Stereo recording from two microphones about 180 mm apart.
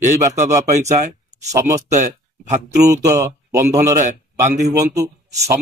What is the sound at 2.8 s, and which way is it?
Speech, 15° right (ahead or behind).